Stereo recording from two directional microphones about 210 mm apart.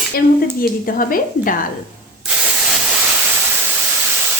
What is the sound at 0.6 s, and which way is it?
Speech, 40° left (ahead or behind).